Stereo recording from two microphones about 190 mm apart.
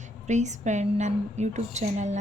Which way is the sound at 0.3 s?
40° right (ahead or behind).